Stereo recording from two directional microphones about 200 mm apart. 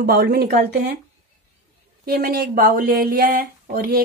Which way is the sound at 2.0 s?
50° right (ahead or behind).